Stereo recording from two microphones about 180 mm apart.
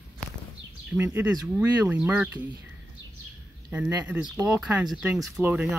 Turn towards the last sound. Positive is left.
turn(degrees=-10)  # may be behind; listen again after turning